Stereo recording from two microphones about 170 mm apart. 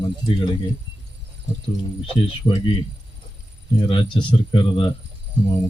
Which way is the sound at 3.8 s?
30° left (ahead or behind).